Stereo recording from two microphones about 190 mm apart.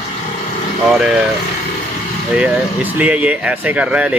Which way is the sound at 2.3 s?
5° right (ahead or behind).